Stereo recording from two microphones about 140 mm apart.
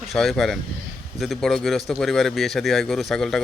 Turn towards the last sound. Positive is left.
turn(degrees=0)  # may be behind; listen again after turning